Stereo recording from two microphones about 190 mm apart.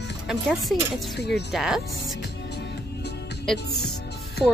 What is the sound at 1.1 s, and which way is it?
Speech, 60° left (ahead or behind).